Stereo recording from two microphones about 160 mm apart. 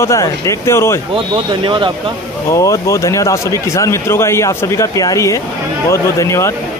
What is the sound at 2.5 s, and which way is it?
Speech, 20° left (ahead or behind).